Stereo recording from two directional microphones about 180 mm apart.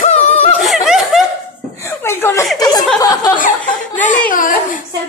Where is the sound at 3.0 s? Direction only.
20° left (ahead or behind).